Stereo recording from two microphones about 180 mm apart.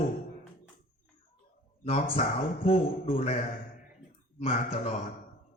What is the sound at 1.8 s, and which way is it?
Speech, 35° left (ahead or behind).